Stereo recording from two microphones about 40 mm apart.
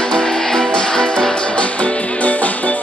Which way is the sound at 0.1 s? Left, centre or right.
Centre.